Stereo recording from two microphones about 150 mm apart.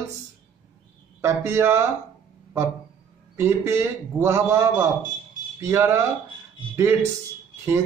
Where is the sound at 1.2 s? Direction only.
15° right (ahead or behind).